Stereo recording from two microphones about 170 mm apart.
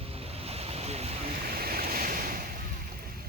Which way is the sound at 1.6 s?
60° right (ahead or behind).